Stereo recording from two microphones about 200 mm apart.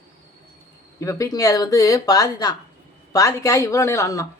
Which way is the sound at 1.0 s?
15° left (ahead or behind).